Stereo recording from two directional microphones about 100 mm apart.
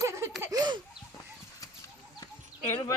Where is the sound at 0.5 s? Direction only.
45° right (ahead or behind).